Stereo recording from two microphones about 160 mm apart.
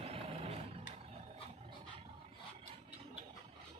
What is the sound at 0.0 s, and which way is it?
Vehicle, 40° right (ahead or behind).